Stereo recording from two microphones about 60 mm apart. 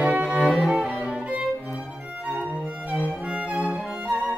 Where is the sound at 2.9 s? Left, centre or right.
Left.